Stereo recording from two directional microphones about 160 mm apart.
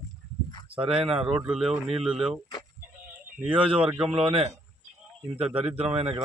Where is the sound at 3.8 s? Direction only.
10° right (ahead or behind).